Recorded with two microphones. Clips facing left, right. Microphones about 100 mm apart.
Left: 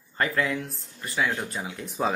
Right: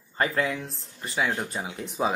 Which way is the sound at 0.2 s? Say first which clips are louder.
Even; 30° right (ahead or behind).